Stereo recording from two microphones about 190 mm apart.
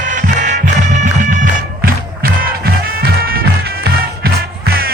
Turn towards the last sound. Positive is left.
turn(degrees=-55)  # may be behind; listen again after turning